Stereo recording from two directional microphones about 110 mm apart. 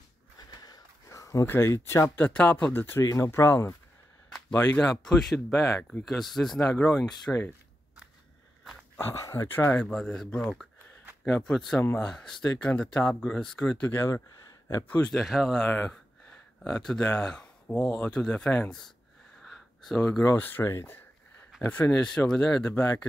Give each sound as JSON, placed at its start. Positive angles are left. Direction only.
{"t": 0.4, "sound": "a sound", "side_deg": 35}
{"t": 1.5, "sound": "speech", "side_deg": 25}
{"t": 4.3, "sound": "speech", "side_deg": 10}
{"t": 8.9, "sound": "speech", "side_deg": 25}
{"t": 9.8, "sound": "speech", "side_deg": 5}
{"t": 13.8, "sound": "speech", "side_deg": 25}
{"t": 15.1, "sound": "speech", "side_deg": 0}
{"t": 19.4, "sound": "a sound", "side_deg": 0}
{"t": 20.0, "sound": "speech", "side_deg": 15}